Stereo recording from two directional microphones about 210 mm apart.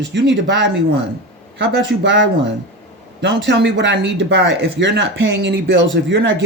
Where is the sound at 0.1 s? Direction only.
55° right (ahead or behind).